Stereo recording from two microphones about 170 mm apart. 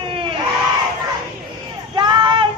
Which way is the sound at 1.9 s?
25° right (ahead or behind).